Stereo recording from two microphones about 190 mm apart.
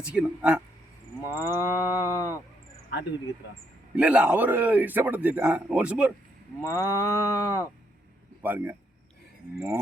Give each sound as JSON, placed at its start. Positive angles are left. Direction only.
{"t": 0.0, "sound": "speech", "side_deg": -5}
{"t": 1.2, "sound": "cattle", "side_deg": 15}
{"t": 3.9, "sound": "a man's voice", "side_deg": -5}
{"t": 6.6, "sound": "cattle", "side_deg": 15}
{"t": 8.4, "sound": "speech", "side_deg": -10}